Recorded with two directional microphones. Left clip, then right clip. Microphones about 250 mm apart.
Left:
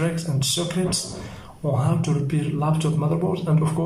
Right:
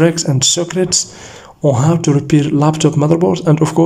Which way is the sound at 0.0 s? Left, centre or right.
Right.